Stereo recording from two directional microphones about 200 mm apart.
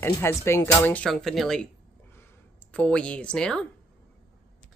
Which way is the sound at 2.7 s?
5° left (ahead or behind).